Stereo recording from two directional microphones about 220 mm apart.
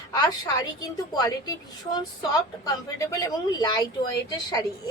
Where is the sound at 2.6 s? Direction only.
15° left (ahead or behind).